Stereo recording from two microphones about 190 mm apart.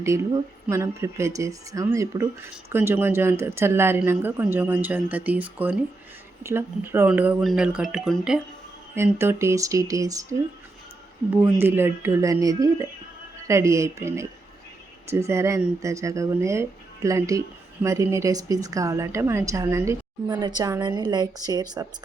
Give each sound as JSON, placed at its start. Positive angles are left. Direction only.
{"t": 0.0, "sound": "speech", "side_deg": -15}
{"t": 9.0, "sound": "speech", "side_deg": -15}
{"t": 11.6, "sound": "a woman's voice", "side_deg": -10}